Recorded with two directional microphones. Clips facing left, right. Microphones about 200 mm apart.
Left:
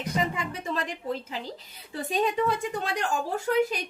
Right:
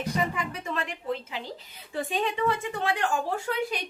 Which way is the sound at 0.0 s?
25° left (ahead or behind).